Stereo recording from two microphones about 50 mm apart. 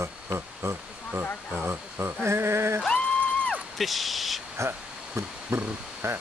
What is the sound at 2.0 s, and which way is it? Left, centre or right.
Speech, right.